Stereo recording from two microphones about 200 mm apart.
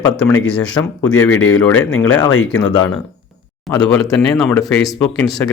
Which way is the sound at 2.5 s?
20° left (ahead or behind).